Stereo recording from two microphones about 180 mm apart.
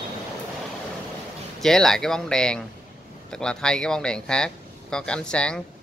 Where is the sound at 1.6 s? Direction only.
Centre (ahead or behind).